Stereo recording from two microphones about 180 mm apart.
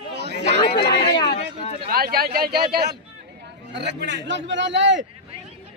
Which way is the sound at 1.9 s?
55° right (ahead or behind).